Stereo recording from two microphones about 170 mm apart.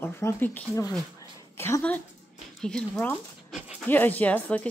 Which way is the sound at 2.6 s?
5° left (ahead or behind).